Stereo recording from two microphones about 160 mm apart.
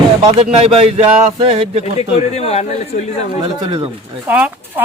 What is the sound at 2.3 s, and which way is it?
Speech, 40° left (ahead or behind).